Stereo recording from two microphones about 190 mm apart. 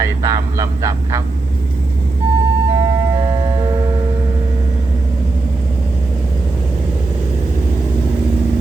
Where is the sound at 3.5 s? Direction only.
20° right (ahead or behind).